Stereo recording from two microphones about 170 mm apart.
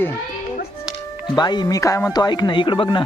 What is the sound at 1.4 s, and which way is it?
Speech, 25° left (ahead or behind).